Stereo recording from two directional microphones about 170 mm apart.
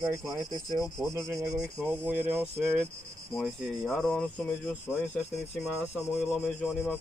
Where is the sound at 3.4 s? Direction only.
Centre (ahead or behind).